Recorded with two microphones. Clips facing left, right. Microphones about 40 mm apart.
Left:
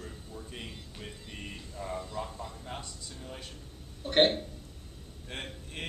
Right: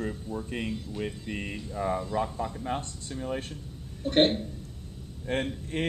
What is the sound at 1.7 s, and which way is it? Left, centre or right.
Speech, right.